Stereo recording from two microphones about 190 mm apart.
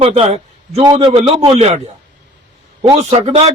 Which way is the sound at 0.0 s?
30° right (ahead or behind).